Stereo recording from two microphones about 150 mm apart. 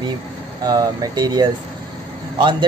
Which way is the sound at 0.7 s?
25° right (ahead or behind).